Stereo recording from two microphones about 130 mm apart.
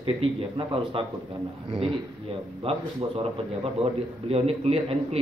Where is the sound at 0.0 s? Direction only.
45° right (ahead or behind).